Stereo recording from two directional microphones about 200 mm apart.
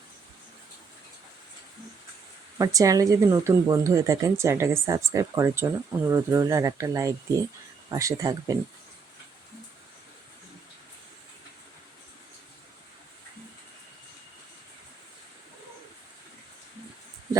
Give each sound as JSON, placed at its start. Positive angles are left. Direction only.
{"t": 2.6, "sound": "speech", "side_deg": -15}